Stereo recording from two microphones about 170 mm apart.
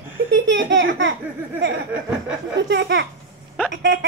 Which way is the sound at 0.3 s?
90° right.